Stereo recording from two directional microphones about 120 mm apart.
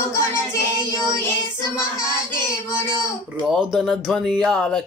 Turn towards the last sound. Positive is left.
turn(degrees=5)  # may be behind; listen again after turning